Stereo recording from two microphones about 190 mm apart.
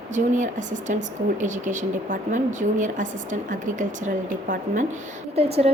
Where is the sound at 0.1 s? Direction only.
40° right (ahead or behind).